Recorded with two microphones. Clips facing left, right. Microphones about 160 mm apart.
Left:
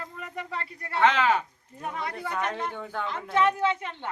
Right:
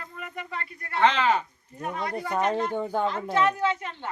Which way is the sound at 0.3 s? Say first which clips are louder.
Left 2 dB; 35° left (ahead or behind).